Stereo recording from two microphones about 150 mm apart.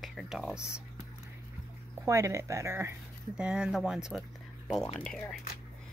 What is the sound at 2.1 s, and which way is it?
Speech, 20° right (ahead or behind).